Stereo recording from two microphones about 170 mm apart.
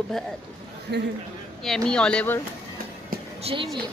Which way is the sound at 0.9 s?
80° right.